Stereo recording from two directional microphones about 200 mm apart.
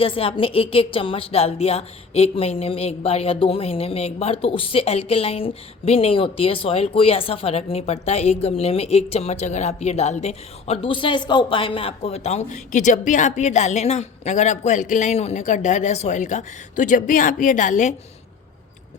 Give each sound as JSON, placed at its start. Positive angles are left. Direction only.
{"t": 0.0, "sound": "a woman's voice", "side_deg": 25}